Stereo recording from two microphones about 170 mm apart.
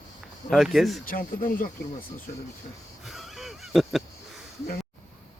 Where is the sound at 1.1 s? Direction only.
55° left (ahead or behind).